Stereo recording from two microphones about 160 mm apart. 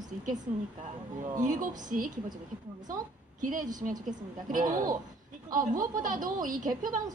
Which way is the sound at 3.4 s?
55° right (ahead or behind).